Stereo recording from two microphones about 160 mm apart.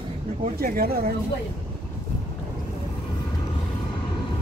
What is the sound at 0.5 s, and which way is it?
Speech, 70° right (ahead or behind).